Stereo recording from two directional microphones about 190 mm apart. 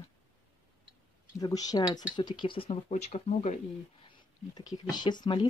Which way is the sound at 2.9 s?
35° left (ahead or behind).